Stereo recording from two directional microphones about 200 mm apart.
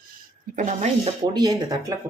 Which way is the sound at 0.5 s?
35° right (ahead or behind).